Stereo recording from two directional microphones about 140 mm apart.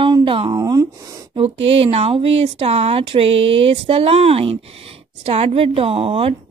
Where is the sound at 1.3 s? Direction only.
45° right (ahead or behind).